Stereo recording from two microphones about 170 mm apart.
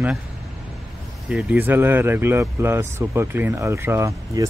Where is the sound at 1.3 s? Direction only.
5° right (ahead or behind).